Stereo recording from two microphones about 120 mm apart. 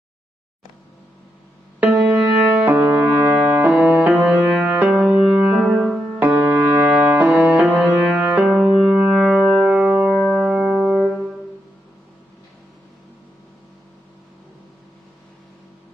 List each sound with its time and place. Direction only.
1.8 s music: 10° right (ahead or behind)
3.8 s music: 5° right (ahead or behind)
6.1 s music: 15° right (ahead or behind)
7.5 s music: centre (ahead or behind)